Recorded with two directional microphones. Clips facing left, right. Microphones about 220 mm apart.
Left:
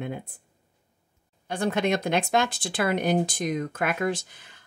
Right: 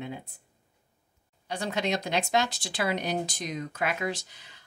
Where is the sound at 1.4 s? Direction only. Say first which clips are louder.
Left 5 dB; 50° left (ahead or behind).